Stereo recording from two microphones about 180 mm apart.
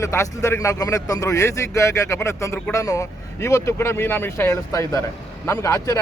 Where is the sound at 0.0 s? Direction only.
15° left (ahead or behind).